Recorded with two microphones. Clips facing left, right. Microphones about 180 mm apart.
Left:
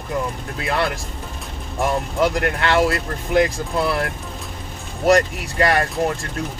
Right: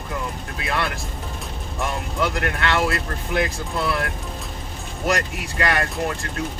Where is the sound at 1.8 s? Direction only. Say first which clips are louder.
Left 6 dB; 35° left (ahead or behind).